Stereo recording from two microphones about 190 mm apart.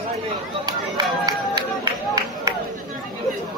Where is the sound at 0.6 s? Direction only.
20° right (ahead or behind).